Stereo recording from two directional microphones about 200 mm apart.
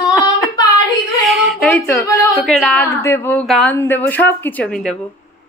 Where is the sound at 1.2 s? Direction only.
Centre (ahead or behind).